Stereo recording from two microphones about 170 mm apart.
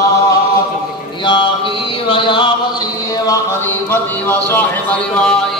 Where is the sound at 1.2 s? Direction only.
30° left (ahead or behind).